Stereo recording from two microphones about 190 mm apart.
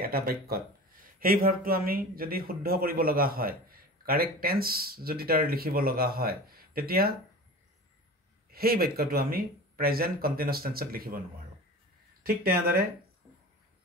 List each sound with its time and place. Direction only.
0.0 s speech: 50° right (ahead or behind)
8.5 s speech: 55° right (ahead or behind)